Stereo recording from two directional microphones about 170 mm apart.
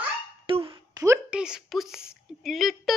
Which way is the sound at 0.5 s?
30° right (ahead or behind).